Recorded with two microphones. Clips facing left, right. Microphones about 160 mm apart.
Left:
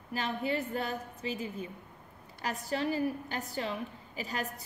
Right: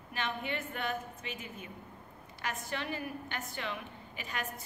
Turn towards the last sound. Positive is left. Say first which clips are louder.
# left 3 dB
turn(degrees=35)  # may be behind; listen again after turning